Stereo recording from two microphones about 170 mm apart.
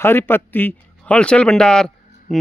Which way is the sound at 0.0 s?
15° left (ahead or behind).